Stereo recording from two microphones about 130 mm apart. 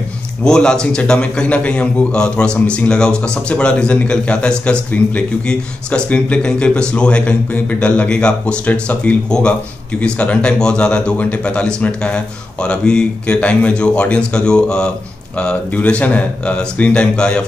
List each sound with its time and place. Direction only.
0.4 s a man's voice: 5° left (ahead or behind)